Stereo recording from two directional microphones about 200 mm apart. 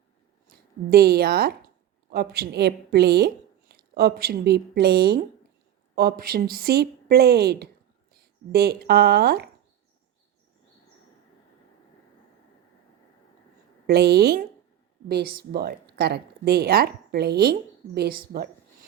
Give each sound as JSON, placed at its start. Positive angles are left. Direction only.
{"t": 0.4, "sound": "a woman's voice", "side_deg": -50}
{"t": 13.8, "sound": "a woman's voice", "side_deg": -55}